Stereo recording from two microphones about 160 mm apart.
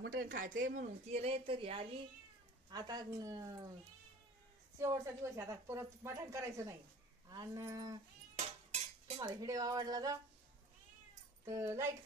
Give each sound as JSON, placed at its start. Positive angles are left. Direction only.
{"t": 0.2, "sound": "speech", "side_deg": -65}
{"t": 1.0, "sound": "speech", "side_deg": -40}
{"t": 2.7, "sound": "speech", "side_deg": -25}
{"t": 4.7, "sound": "a woman's voice", "side_deg": -20}
{"t": 8.4, "sound": "dishes", "side_deg": -40}
{"t": 9.2, "sound": "speech", "side_deg": -25}
{"t": 11.4, "sound": "a woman's voice", "side_deg": -20}